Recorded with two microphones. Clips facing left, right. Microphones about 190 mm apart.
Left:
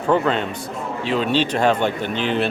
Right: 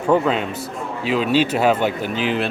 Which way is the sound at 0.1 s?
5° right (ahead or behind).